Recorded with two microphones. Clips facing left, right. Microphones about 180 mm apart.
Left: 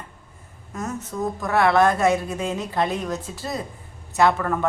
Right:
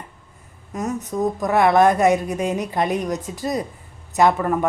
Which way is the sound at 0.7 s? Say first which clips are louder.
Right 5 dB; 20° right (ahead or behind).